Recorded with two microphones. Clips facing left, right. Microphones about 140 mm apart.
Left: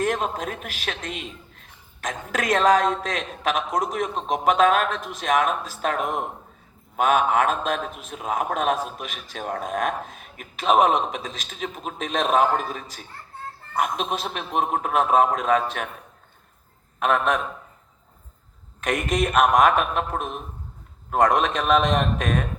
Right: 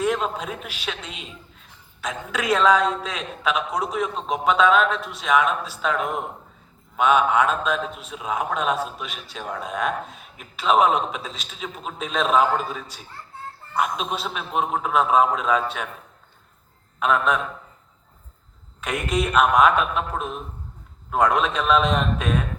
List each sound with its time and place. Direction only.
0.0 s a man's voice: 45° left (ahead or behind)
17.0 s a man's voice: 50° left (ahead or behind)
18.8 s a man's voice: 45° left (ahead or behind)